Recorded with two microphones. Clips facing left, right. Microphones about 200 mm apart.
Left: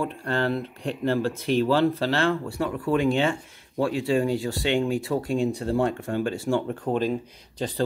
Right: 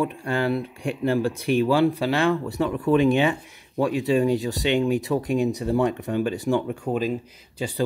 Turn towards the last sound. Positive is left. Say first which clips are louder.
# even
turn(degrees=-10)  # may be behind; listen again after turning